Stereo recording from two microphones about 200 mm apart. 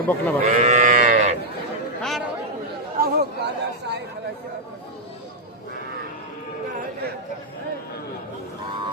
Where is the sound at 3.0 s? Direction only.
55° right (ahead or behind).